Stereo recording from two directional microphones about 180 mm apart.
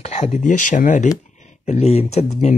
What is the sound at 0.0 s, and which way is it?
Speech, 40° left (ahead or behind).